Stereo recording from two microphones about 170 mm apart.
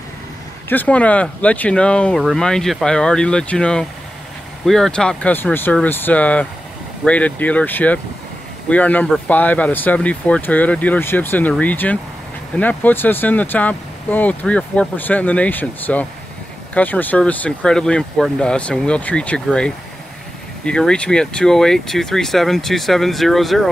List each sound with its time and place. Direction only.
0.7 s speech: 10° left (ahead or behind)